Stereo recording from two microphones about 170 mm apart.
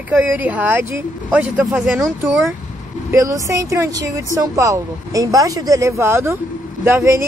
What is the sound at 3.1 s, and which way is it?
Speech, 20° right (ahead or behind).